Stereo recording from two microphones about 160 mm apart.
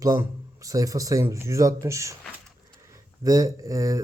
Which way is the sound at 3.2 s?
20° right (ahead or behind).